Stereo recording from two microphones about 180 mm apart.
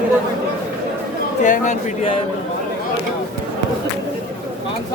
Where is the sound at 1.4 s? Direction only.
45° left (ahead or behind).